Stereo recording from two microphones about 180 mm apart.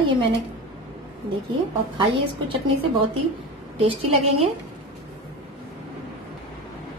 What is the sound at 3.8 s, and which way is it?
Speech, 30° right (ahead or behind).